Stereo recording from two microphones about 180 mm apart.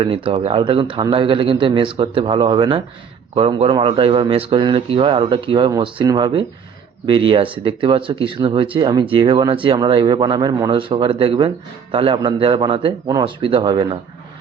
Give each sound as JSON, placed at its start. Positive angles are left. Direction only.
{"t": 0.0, "sound": "speech", "side_deg": -30}